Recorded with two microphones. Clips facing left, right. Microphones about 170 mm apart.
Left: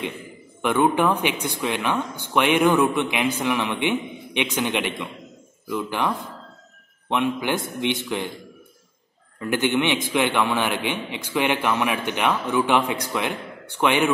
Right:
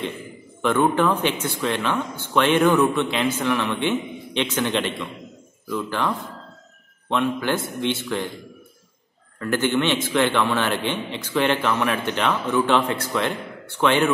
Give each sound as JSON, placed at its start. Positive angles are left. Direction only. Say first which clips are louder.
{"t": 0.6, "sound": "a man's voice", "louder": "even", "side_deg": 15}
{"t": 9.4, "sound": "a man's voice", "louder": "even", "side_deg": 15}